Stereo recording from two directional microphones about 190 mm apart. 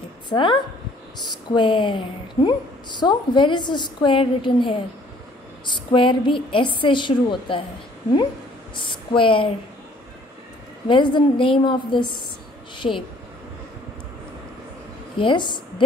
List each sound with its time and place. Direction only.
0.3 s a woman's voice: 25° left (ahead or behind)
9.1 s a woman's voice: 25° left (ahead or behind)
10.9 s a woman's voice: 25° left (ahead or behind)
12.7 s a sound: 25° left (ahead or behind)
15.1 s a woman's voice: 25° left (ahead or behind)